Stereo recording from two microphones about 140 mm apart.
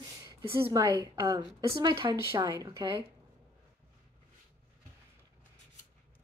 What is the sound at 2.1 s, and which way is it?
Speech, 20° right (ahead or behind).